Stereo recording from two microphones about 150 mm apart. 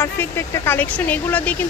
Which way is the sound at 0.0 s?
15° left (ahead or behind).